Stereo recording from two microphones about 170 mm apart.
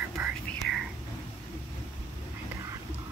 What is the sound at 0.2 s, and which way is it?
Whispering, 15° right (ahead or behind).